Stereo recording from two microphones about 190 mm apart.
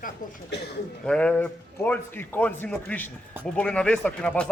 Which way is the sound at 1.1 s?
5° left (ahead or behind).